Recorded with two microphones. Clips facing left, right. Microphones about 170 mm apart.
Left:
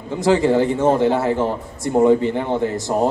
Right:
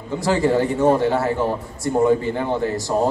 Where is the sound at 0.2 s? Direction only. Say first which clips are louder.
Left 3 dB; 20° left (ahead or behind).